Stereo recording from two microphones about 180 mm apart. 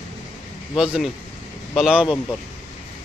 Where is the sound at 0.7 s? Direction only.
Centre (ahead or behind).